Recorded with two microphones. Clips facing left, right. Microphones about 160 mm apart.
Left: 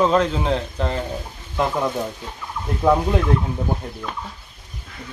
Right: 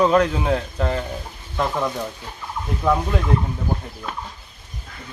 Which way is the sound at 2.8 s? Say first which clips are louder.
Left 3 dB; 15° left (ahead or behind).